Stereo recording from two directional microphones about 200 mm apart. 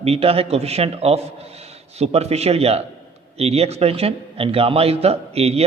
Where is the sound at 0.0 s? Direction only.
30° right (ahead or behind).